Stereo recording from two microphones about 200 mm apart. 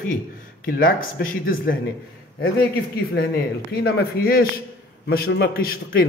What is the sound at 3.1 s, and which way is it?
A man's voice, 50° left (ahead or behind).